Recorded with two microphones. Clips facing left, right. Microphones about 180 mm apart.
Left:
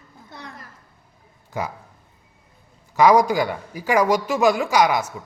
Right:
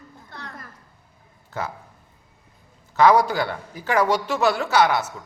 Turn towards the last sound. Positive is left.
turn(degrees=10)  # may be behind; listen again after turning